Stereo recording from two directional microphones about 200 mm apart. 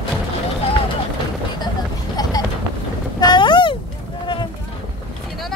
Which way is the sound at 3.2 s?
20° left (ahead or behind).